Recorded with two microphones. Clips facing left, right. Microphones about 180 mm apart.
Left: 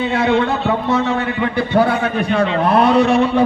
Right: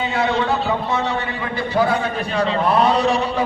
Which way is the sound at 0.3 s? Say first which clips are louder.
Left 3 dB; 35° right (ahead or behind).